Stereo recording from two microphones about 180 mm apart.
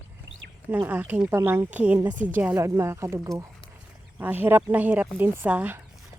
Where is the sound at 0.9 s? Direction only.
10° right (ahead or behind).